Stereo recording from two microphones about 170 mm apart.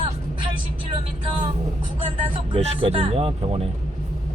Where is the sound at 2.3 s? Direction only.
35° right (ahead or behind).